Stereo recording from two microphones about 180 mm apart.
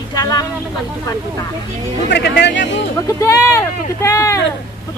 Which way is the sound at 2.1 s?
70° left (ahead or behind).